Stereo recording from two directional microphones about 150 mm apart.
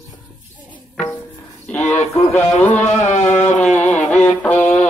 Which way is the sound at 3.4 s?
50° left (ahead or behind).